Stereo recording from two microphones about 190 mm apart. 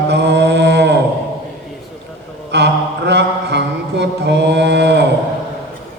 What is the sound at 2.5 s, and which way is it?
Mantra, 65° right (ahead or behind).